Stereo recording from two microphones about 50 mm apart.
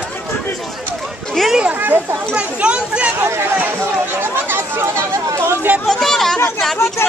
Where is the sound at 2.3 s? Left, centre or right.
Right.